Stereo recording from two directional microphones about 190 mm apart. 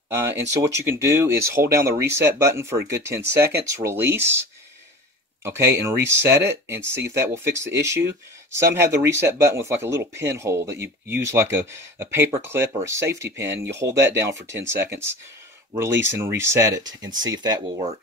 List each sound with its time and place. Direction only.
0.1 s speech: 15° right (ahead or behind)